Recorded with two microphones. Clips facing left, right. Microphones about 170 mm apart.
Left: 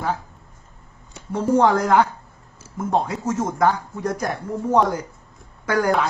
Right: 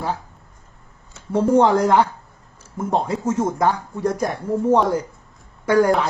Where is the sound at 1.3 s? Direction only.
30° right (ahead or behind).